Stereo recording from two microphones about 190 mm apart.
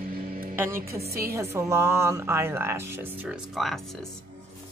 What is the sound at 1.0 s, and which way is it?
Speech, 55° right (ahead or behind).